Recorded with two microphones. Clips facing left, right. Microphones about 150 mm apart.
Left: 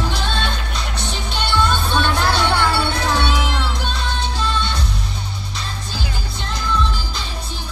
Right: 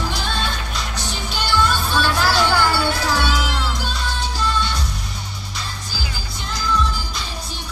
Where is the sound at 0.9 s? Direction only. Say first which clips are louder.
Left 3 dB; 25° left (ahead or behind).